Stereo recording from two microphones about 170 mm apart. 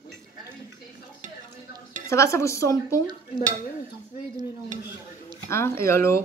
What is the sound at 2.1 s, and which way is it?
Speech, 15° left (ahead or behind).